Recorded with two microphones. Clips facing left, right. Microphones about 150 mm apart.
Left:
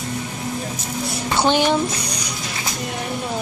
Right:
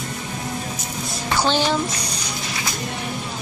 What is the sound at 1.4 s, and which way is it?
Speech, 15° left (ahead or behind).